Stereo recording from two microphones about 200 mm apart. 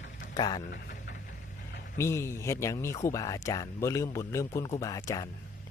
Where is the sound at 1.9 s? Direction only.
15° left (ahead or behind).